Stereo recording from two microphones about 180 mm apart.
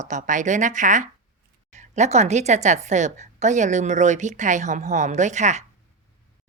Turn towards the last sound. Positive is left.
turn(degrees=-40)  # may be behind; listen again after turning